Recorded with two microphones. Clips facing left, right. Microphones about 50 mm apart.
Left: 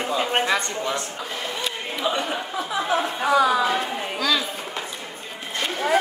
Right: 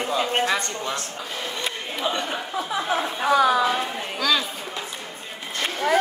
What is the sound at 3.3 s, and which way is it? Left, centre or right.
Speech, right.